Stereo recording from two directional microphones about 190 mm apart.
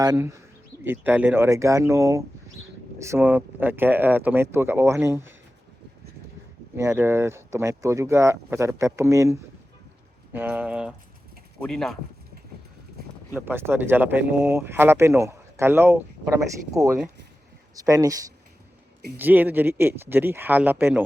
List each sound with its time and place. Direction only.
0.0 s speech: 15° right (ahead or behind)
6.7 s speech: 15° right (ahead or behind); by 11.9 s centre (ahead or behind)
13.3 s speech: 10° right (ahead or behind)